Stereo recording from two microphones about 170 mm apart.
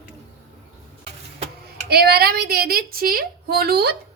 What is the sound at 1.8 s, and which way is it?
A woman's voice, 65° right (ahead or behind).